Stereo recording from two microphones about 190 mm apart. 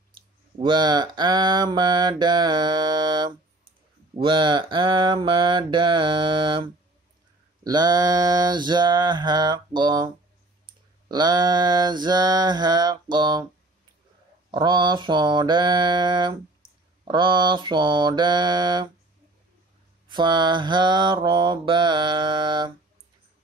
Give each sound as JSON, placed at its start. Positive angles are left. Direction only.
{"t": 0.6, "sound": "mantra", "side_deg": -25}
{"t": 14.5, "sound": "mantra", "side_deg": -25}
{"t": 20.1, "sound": "mantra", "side_deg": -25}